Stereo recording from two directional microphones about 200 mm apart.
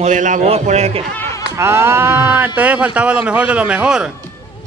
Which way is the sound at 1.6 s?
10° right (ahead or behind).